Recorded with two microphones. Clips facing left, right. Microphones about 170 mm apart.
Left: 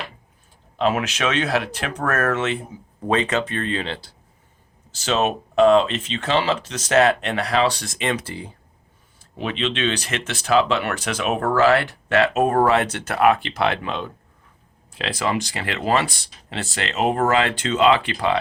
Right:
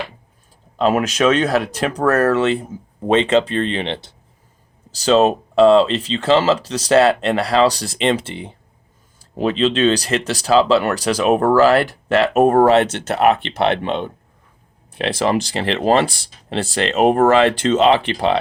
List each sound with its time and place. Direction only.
0.8 s speech: 40° right (ahead or behind); by 4.1 s 25° right (ahead or behind)
4.9 s speech: 35° right (ahead or behind)
9.1 s speech: 35° right (ahead or behind)
17.0 s speech: 50° right (ahead or behind)
17.2 s speech: 30° right (ahead or behind)